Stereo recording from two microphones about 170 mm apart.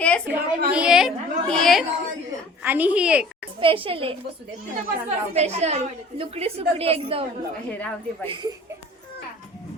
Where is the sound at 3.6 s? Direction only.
30° right (ahead or behind).